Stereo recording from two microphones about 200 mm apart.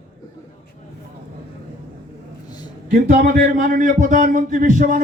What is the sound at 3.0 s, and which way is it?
Speech, 45° right (ahead or behind).